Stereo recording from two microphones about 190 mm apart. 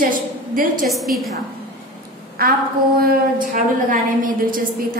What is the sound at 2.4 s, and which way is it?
Speech, 50° right (ahead or behind).